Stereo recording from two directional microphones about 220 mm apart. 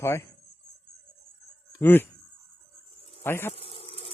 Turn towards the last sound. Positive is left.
turn(degrees=25)  # may be behind; listen again after turning